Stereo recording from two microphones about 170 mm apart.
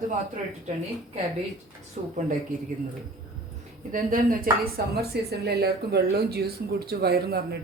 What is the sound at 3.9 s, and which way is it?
A woman's voice, 55° right (ahead or behind).